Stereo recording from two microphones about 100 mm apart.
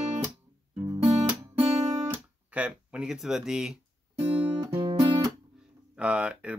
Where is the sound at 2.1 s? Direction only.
15° right (ahead or behind).